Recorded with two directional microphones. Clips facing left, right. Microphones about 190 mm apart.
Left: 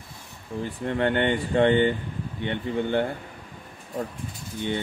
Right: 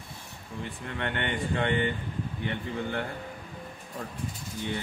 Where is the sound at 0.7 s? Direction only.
35° left (ahead or behind).